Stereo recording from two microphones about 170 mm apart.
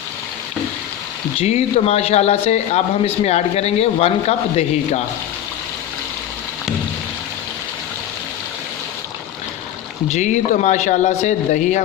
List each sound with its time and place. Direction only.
1.4 s speech: 40° left (ahead or behind)
10.1 s speech: 45° left (ahead or behind)